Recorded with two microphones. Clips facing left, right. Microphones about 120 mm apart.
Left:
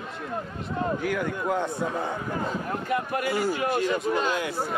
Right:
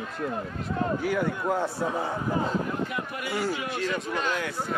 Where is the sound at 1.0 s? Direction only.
5° right (ahead or behind).